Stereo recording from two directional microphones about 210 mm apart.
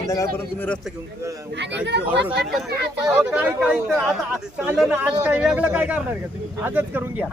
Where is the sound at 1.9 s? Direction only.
55° right (ahead or behind).